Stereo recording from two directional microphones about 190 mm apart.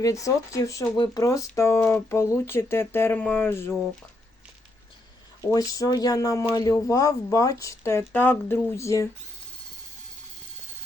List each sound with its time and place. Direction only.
0.0 s speech: 15° left (ahead or behind)
5.5 s speech: 20° left (ahead or behind)